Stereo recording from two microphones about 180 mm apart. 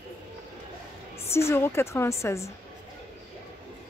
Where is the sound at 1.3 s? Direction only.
15° left (ahead or behind).